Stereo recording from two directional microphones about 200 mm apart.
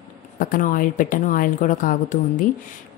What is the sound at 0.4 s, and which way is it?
Speech, 45° left (ahead or behind).